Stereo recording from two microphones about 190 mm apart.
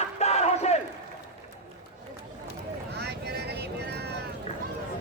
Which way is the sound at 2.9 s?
60° right (ahead or behind).